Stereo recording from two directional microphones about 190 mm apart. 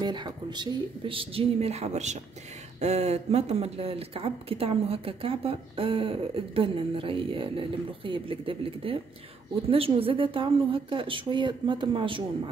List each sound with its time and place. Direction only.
0.0 s speech: 25° right (ahead or behind)